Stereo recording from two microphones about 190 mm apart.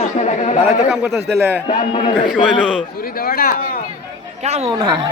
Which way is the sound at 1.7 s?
35° left (ahead or behind).